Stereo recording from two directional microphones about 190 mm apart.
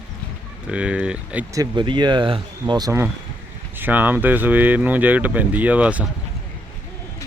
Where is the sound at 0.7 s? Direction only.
5° right (ahead or behind).